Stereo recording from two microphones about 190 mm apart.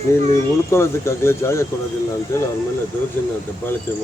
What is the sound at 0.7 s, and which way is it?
Speech, 15° left (ahead or behind).